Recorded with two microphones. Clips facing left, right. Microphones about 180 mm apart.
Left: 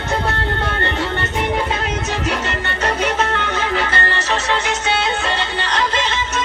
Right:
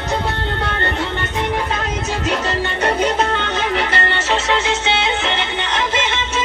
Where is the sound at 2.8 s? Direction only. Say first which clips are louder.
Right 2 dB; 15° right (ahead or behind).